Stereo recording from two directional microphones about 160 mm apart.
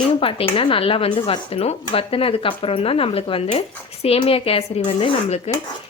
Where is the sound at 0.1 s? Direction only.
35° left (ahead or behind).